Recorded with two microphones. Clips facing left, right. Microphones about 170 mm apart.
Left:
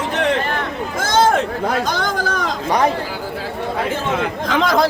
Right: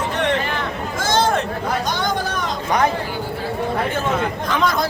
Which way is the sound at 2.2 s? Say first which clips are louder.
Left 3 dB; 90° left.